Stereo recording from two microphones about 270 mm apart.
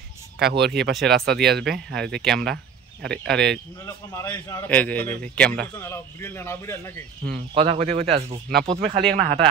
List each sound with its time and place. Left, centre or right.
0.4 s speech: right
2.1 s speech: centre
2.5 s a sound: right
3.3 s a man's voice: centre
7.5 s speech: right